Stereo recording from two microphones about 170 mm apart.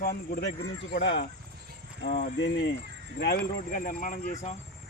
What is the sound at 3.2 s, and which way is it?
Speech, 65° left (ahead or behind).